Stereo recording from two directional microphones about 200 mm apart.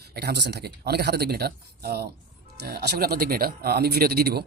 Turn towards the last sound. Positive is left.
turn(degrees=-50)  # may be behind; listen again after turning